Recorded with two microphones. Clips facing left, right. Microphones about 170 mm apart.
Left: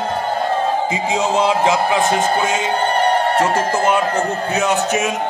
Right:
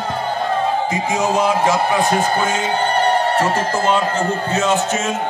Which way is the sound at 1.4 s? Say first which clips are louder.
Left 2 dB; 20° left (ahead or behind).